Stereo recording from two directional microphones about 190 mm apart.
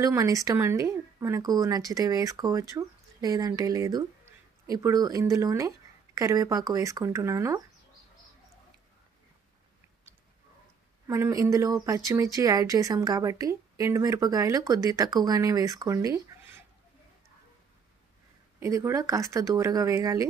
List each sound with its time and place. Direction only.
0.0 s speech: 15° right (ahead or behind)
11.1 s speech: 15° right (ahead or behind)
18.6 s speech: 15° right (ahead or behind)